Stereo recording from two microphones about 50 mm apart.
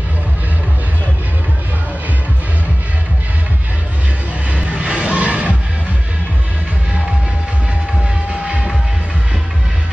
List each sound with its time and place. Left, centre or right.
4.5 s music: right